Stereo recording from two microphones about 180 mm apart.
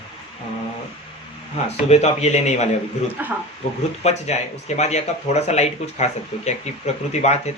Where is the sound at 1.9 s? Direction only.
35° left (ahead or behind).